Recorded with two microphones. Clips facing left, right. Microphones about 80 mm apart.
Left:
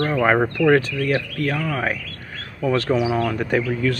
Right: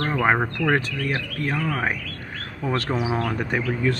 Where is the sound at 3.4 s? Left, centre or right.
Right.